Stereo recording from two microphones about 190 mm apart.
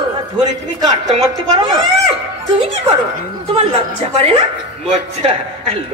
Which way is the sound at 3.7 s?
35° right (ahead or behind).